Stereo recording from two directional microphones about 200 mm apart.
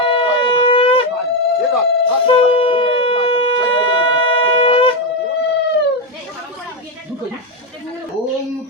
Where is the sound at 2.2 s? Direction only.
25° left (ahead or behind).